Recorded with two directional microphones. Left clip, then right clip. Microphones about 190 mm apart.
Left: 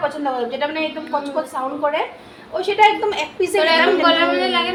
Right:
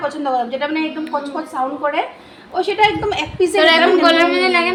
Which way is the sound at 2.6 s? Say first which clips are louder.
Left 1 dB; 40° right (ahead or behind).